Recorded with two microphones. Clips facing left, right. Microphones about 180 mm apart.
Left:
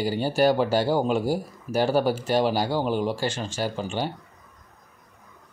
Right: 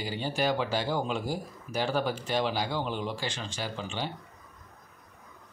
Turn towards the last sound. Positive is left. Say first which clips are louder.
# left 7 dB
turn(degrees=45)  # may be behind; listen again after turning